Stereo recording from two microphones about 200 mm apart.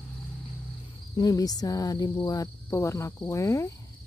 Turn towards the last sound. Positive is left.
turn(degrees=15)  # may be behind; listen again after turning